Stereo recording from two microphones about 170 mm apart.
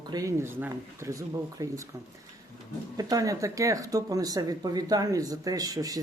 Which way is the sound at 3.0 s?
20° right (ahead or behind).